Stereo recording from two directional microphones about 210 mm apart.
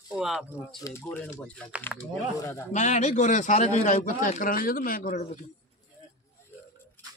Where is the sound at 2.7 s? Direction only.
35° left (ahead or behind).